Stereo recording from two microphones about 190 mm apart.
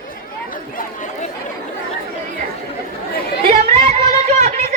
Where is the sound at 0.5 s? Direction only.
45° left (ahead or behind).